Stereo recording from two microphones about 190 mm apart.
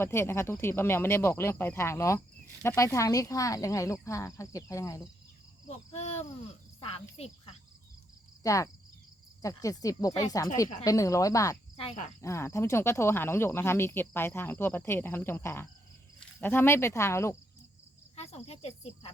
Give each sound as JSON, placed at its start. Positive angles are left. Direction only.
{"t": 0.0, "sound": "speech", "side_deg": 15}
{"t": 5.6, "sound": "speech", "side_deg": 35}
{"t": 8.4, "sound": "speech", "side_deg": 15}
{"t": 11.8, "sound": "speech", "side_deg": 35}
{"t": 12.2, "sound": "speech", "side_deg": 15}
{"t": 18.2, "sound": "cricket", "side_deg": 35}